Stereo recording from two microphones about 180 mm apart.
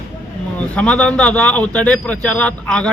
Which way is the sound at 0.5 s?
5° left (ahead or behind).